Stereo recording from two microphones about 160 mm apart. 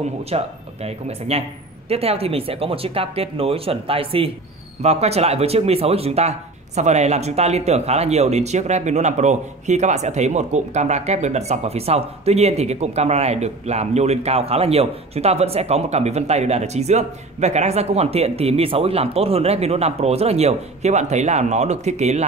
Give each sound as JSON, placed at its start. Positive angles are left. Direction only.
{"t": 0.3, "sound": "speech", "side_deg": -40}